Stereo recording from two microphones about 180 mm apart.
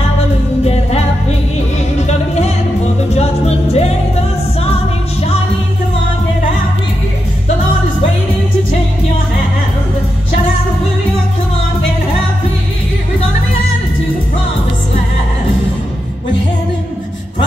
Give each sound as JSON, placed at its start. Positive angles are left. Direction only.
{"t": 2.0, "sound": "music", "side_deg": 35}